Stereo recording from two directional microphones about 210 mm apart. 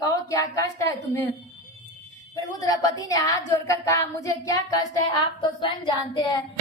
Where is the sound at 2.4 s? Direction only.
15° left (ahead or behind).